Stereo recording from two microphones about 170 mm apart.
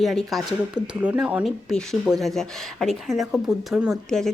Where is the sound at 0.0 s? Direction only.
Centre (ahead or behind).